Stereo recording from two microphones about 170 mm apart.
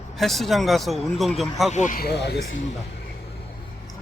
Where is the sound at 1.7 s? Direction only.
50° left (ahead or behind); by 2.4 s 75° left (ahead or behind).